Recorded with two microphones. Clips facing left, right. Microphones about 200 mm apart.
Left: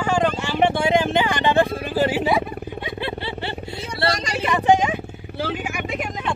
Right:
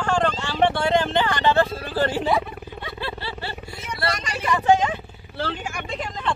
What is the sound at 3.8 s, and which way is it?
Vehicle, 30° left (ahead or behind).